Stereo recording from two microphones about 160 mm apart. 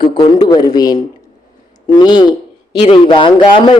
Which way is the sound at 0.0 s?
30° left (ahead or behind).